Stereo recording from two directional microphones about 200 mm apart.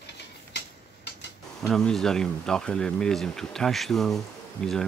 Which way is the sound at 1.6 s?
Centre (ahead or behind).